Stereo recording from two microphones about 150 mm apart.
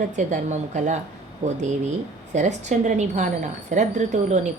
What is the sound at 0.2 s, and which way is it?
Speech, 50° right (ahead or behind).